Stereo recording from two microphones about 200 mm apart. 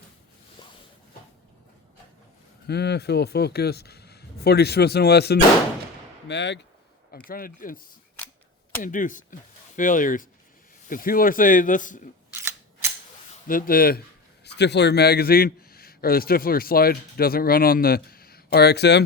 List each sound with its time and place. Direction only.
2.6 s speech: 55° left (ahead or behind)
7.3 s speech: 45° left (ahead or behind)
8.8 s speech: 40° left (ahead or behind)
12.3 s cap gun: 10° right (ahead or behind)
13.5 s speech: 45° left (ahead or behind)
14.4 s a man's voice: 60° left (ahead or behind)